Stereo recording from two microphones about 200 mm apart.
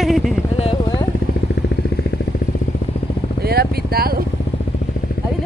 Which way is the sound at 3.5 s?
50° right (ahead or behind).